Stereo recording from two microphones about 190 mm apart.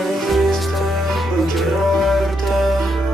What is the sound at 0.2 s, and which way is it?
Music, centre (ahead or behind).